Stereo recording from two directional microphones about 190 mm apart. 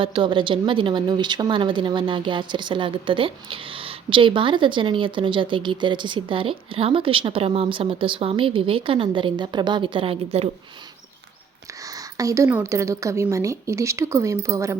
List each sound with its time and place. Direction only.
0.0 s a woman's voice: 25° right (ahead or behind)
11.9 s a woman's voice: 20° right (ahead or behind)